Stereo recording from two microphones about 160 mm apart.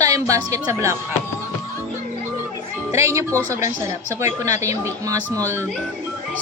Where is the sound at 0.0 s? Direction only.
20° right (ahead or behind).